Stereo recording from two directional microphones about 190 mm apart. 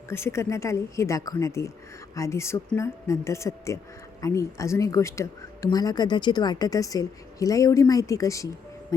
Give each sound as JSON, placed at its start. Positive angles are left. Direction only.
{"t": 0.1, "sound": "speech", "side_deg": 15}